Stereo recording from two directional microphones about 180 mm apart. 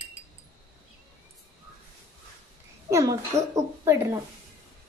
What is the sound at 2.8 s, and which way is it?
A woman's voice, 15° right (ahead or behind).